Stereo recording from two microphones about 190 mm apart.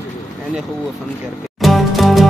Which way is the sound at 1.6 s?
Centre (ahead or behind).